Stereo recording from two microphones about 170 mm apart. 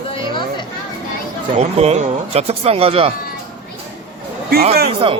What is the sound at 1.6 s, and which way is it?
Speech, 40° right (ahead or behind).